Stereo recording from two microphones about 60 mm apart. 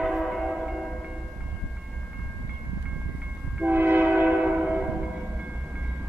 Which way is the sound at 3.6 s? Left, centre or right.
Right.